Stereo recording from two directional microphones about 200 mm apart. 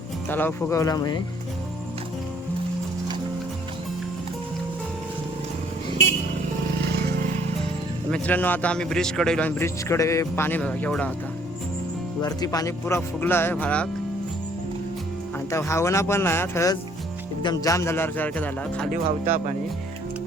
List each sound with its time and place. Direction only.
0.3 s a man's voice: 10° left (ahead or behind)
8.1 s a man's voice: 10° left (ahead or behind)
12.2 s a man's voice: 20° left (ahead or behind)
15.4 s a man's voice: 15° left (ahead or behind)